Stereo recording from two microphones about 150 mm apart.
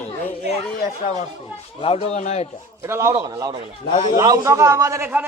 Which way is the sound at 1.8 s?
40° left (ahead or behind).